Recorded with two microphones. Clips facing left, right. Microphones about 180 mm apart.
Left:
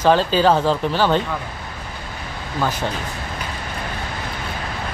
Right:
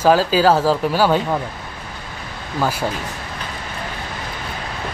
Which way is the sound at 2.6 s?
10° right (ahead or behind).